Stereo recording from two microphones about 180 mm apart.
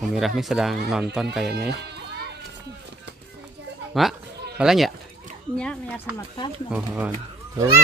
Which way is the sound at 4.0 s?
Centre (ahead or behind).